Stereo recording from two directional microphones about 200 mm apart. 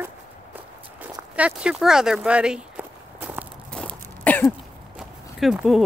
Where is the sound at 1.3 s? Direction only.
5° right (ahead or behind).